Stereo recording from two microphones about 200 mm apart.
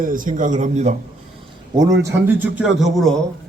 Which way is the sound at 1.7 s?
20° right (ahead or behind).